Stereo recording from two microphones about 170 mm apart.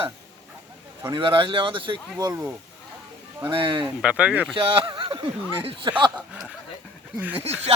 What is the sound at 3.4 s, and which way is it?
Speech, 25° right (ahead or behind).